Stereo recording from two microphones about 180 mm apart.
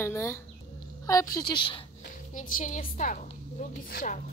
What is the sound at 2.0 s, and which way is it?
A woman's voice, 45° left (ahead or behind).